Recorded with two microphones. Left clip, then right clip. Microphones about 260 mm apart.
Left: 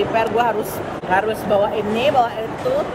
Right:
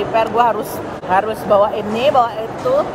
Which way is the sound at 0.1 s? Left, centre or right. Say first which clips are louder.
Right 3 dB; centre.